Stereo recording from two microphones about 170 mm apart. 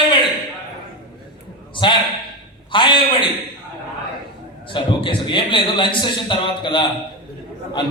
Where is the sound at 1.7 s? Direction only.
30° left (ahead or behind).